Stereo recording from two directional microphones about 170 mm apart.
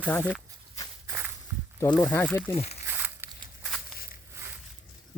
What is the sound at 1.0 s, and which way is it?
Walk, 15° right (ahead or behind).